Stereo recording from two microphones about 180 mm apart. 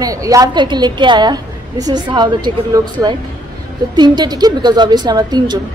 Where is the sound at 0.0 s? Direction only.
20° right (ahead or behind).